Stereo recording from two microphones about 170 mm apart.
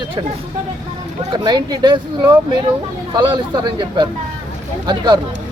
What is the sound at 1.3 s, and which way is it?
Speech, 25° right (ahead or behind).